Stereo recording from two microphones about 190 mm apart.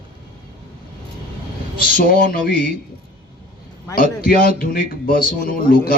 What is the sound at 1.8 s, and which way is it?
Speech, 50° left (ahead or behind).